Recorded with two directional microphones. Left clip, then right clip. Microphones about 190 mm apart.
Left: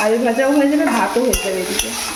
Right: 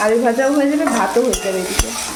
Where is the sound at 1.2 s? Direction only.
45° right (ahead or behind).